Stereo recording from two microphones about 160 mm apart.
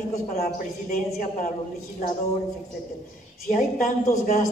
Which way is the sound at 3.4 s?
50° left (ahead or behind).